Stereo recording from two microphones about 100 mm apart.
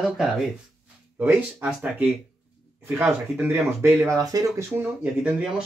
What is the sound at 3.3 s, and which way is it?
Speech, 20° right (ahead or behind).